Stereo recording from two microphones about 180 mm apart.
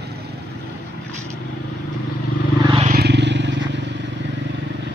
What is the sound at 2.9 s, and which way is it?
Vehicle, 65° right (ahead or behind).